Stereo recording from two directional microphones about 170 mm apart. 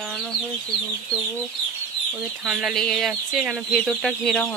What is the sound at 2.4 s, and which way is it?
Speech, centre (ahead or behind).